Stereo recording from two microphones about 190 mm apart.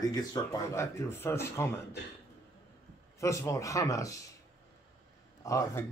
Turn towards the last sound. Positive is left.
turn(degrees=15)  # may be behind; listen again after turning